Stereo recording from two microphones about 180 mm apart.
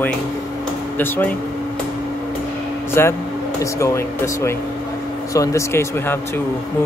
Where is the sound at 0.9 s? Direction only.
10° left (ahead or behind).